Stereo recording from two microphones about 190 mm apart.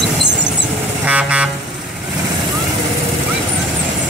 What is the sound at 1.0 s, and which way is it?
Vehicle, 5° right (ahead or behind).